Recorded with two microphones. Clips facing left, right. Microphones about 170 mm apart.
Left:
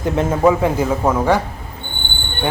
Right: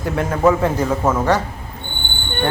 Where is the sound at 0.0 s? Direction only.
20° left (ahead or behind).